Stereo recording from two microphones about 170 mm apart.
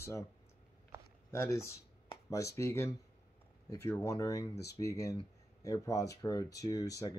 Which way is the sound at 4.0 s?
20° left (ahead or behind).